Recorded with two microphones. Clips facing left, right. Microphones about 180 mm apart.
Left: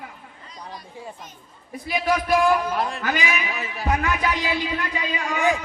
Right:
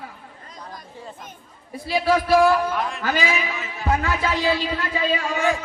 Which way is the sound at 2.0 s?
15° left (ahead or behind).